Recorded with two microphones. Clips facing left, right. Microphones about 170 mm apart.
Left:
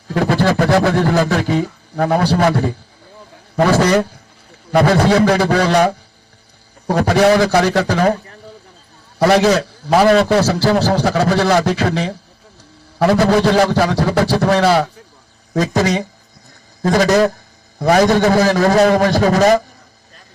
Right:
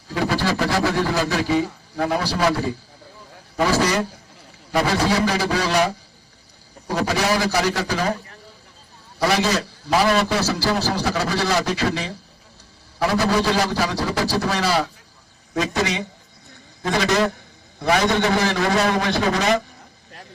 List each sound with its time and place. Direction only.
0.1 s a man's voice: 55° left (ahead or behind)
9.1 s a man's voice: 60° left (ahead or behind)
15.5 s a man's voice: 40° left (ahead or behind)